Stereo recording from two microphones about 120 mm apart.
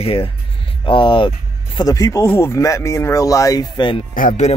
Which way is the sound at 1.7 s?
30° left (ahead or behind).